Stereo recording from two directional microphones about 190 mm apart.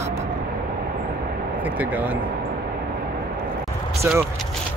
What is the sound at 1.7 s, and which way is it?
Speech, 10° right (ahead or behind).